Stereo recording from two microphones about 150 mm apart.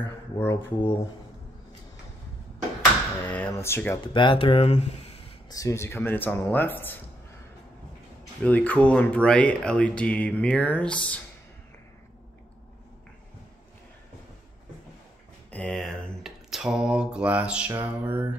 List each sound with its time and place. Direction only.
0.4 s speech: 15° left (ahead or behind)
3.3 s speech: 10° left (ahead or behind)
4.1 s speech: 35° left (ahead or behind)
5.5 s speech: 20° left (ahead or behind)
8.5 s speech: 10° left (ahead or behind)
15.5 s mantra: 5° left (ahead or behind); by 18.2 s 10° right (ahead or behind)